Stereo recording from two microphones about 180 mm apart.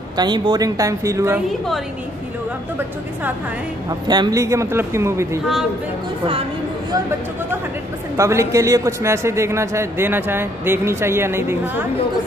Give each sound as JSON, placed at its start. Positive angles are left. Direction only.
{"t": 0.2, "sound": "speech", "side_deg": -25}
{"t": 4.1, "sound": "a man's voice", "side_deg": -20}
{"t": 8.2, "sound": "a man's voice", "side_deg": -15}